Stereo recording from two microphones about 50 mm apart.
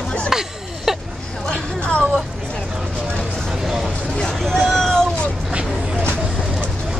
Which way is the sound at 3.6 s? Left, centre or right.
Centre.